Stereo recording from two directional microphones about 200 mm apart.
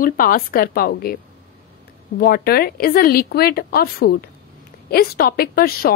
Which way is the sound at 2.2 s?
50° left (ahead or behind).